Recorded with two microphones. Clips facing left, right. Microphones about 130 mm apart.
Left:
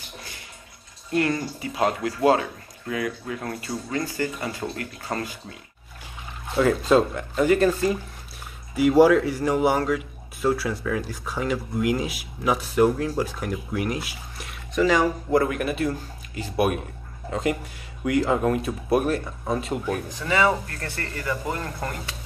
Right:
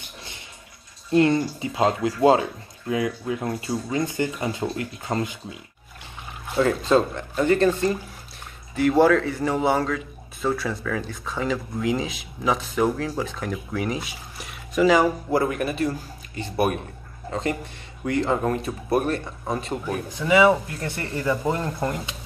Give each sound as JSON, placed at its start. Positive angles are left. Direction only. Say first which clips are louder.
{"t": 1.1, "sound": "speech", "louder": "right 5 dB", "side_deg": -25}
{"t": 6.5, "sound": "a man's voice", "louder": "left 1 dB", "side_deg": 0}
{"t": 20.2, "sound": "speech", "louder": "right 6 dB", "side_deg": -15}